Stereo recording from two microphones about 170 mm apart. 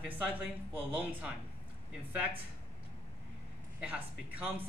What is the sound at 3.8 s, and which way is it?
Speech, 10° right (ahead or behind).